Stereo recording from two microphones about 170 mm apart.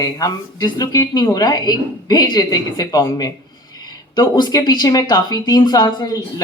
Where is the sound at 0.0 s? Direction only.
20° left (ahead or behind).